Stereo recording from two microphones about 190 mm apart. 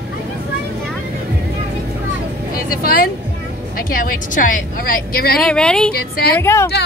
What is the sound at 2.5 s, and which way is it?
Speech, 50° left (ahead or behind).